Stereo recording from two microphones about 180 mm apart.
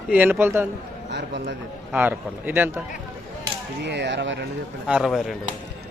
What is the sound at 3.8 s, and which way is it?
Speech, 75° right (ahead or behind).